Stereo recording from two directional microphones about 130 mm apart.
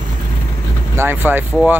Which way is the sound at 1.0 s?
15° right (ahead or behind).